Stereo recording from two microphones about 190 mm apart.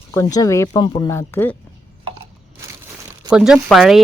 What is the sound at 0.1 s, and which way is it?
Speech, 15° left (ahead or behind).